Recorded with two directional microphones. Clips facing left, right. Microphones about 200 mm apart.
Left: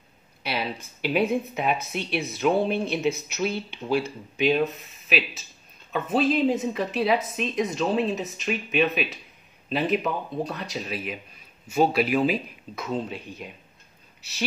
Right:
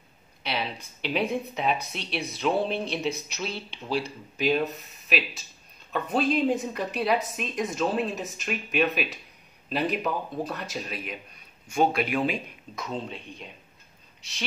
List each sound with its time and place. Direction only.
0.4 s speech: 5° left (ahead or behind)